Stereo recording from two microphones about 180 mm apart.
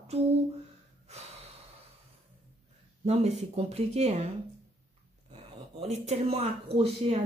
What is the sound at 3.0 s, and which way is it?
Speech, 35° right (ahead or behind).